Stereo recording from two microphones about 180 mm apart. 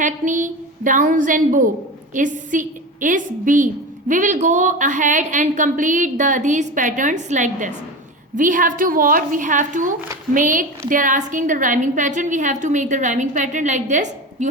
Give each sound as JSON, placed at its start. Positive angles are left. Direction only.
{"t": 0.0, "sound": "a woman's voice", "side_deg": -45}